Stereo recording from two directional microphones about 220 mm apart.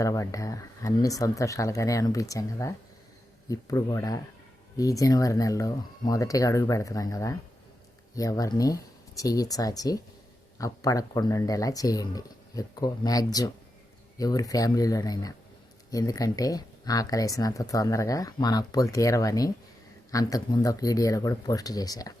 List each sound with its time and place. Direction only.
0.0 s speech: 15° left (ahead or behind)